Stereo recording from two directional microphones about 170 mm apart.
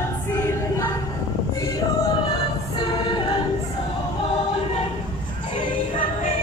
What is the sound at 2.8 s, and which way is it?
A capella, 25° left (ahead or behind).